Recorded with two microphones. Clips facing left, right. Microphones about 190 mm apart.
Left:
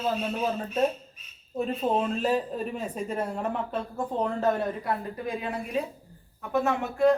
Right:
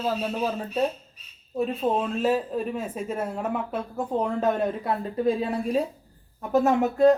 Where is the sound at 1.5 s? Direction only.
Centre (ahead or behind).